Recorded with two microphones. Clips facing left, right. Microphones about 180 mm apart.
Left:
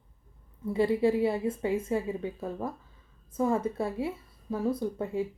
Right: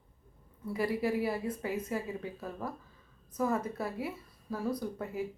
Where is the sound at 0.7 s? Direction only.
25° left (ahead or behind).